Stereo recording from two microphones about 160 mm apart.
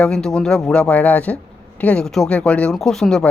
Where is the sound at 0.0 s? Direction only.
5° left (ahead or behind).